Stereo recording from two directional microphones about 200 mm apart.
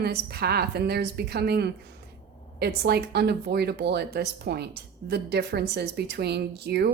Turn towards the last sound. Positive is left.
turn(degrees=-55)  # may be behind; listen again after turning